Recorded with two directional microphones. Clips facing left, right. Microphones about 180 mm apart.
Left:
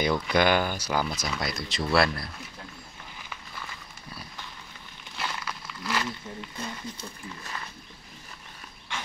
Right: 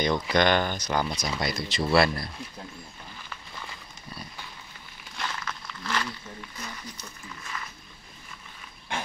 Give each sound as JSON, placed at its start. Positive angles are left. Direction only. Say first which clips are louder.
{"t": 0.0, "sound": "speech", "louder": "even", "side_deg": 5}
{"t": 5.1, "sound": "crumpling", "louder": "even", "side_deg": 10}
{"t": 6.0, "sound": "a sound", "louder": "left 3 dB", "side_deg": 30}